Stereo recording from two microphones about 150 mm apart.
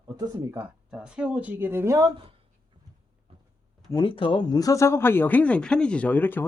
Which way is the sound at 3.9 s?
35° left (ahead or behind).